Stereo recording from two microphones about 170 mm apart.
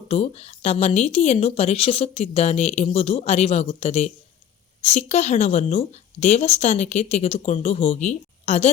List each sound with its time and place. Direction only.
0.1 s a woman's voice: 40° left (ahead or behind)